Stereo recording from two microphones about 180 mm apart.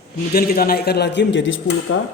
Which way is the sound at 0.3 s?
55° left (ahead or behind).